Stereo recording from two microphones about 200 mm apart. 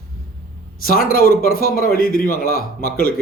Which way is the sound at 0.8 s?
45° left (ahead or behind).